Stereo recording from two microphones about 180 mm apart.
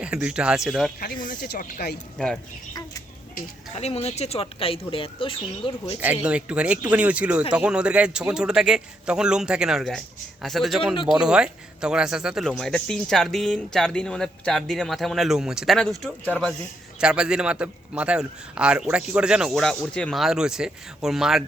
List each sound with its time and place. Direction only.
0.0 s speech: 5° right (ahead or behind)
1.3 s speech: 55° left (ahead or behind)
2.1 s speech: centre (ahead or behind)
3.8 s speech: 35° left (ahead or behind)
6.2 s speech: 5° right (ahead or behind)